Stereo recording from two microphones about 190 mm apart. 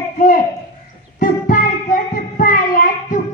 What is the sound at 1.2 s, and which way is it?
Music, 45° left (ahead or behind).